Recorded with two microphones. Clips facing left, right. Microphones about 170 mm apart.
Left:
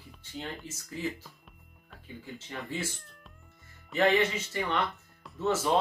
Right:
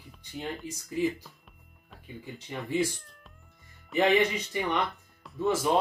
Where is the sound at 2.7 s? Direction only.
15° right (ahead or behind).